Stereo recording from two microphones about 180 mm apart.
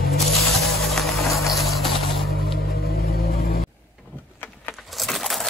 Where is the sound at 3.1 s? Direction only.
55° left (ahead or behind).